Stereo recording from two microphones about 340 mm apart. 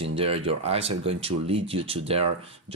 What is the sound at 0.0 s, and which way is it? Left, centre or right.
Speech, centre.